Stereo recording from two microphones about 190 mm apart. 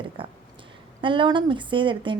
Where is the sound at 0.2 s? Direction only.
25° right (ahead or behind).